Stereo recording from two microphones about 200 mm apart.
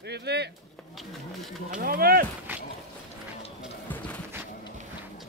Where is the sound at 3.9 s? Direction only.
5° left (ahead or behind).